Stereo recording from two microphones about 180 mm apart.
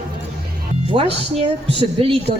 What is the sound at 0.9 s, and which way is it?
Speech, 30° right (ahead or behind).